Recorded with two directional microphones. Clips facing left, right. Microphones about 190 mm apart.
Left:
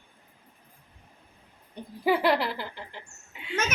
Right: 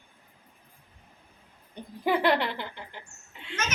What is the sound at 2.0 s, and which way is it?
Speech, 5° left (ahead or behind).